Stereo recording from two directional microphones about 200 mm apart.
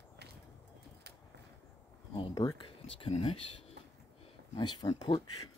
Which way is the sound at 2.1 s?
20° left (ahead or behind).